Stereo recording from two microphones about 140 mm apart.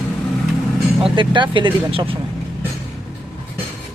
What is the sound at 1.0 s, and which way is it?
Speech, 35° right (ahead or behind).